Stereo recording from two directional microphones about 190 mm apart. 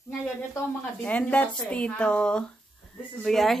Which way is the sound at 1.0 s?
10° left (ahead or behind).